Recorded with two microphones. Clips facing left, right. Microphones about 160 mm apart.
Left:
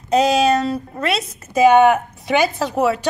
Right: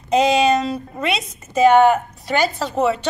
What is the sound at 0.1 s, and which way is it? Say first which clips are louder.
A woman's voice: even; 5° left (ahead or behind).